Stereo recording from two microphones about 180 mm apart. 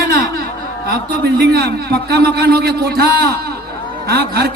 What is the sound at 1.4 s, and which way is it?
A man's voice, 65° right (ahead or behind).